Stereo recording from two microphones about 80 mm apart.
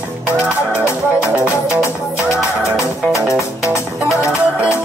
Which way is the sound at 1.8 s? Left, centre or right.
Left.